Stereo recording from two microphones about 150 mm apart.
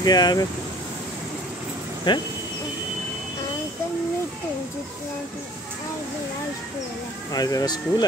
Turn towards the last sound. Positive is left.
turn(degrees=25)  # may be behind; listen again after turning